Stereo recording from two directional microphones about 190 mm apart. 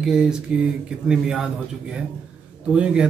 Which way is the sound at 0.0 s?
5° right (ahead or behind).